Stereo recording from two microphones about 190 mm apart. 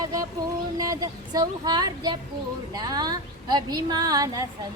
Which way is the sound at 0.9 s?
20° right (ahead or behind).